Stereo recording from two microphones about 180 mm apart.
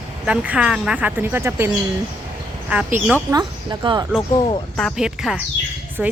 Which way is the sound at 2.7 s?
10° right (ahead or behind).